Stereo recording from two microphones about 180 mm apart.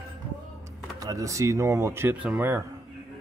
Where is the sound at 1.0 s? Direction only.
20° right (ahead or behind).